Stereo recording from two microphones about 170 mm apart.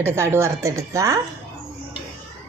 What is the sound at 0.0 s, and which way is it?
Speech, 15° right (ahead or behind).